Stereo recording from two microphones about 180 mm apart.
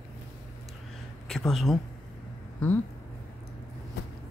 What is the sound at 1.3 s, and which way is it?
Speech, centre (ahead or behind).